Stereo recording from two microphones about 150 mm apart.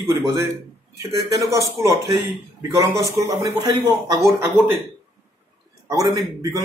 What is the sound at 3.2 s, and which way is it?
A man's voice, 20° right (ahead or behind).